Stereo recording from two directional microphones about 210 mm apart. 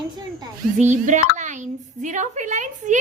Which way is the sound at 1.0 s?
35° right (ahead or behind).